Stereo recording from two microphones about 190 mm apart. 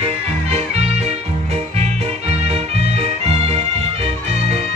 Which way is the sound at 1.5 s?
35° right (ahead or behind).